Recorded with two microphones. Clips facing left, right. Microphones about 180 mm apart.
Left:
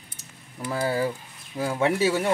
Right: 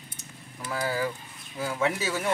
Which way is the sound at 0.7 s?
30° left (ahead or behind).